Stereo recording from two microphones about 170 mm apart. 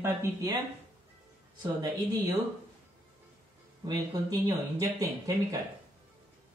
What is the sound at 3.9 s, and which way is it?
Speech, 25° right (ahead or behind).